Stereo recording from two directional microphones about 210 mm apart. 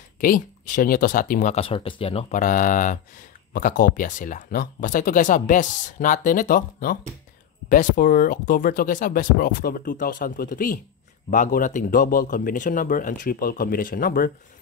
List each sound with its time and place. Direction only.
0.2 s speech: 40° left (ahead or behind)